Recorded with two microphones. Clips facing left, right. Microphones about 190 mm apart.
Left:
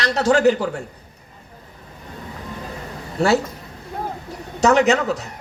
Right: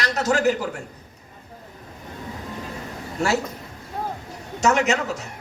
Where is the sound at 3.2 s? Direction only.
35° left (ahead or behind).